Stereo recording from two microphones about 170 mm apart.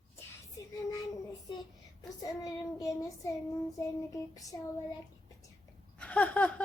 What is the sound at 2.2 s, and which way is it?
Child singing, 20° left (ahead or behind).